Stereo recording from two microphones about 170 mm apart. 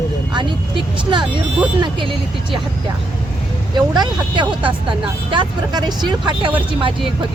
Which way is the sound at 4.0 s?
25° right (ahead or behind).